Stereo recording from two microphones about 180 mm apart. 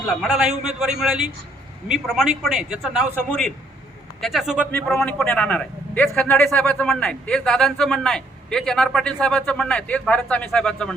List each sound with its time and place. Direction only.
0.1 s a man's voice: centre (ahead or behind)
4.7 s a man's voice: 5° left (ahead or behind)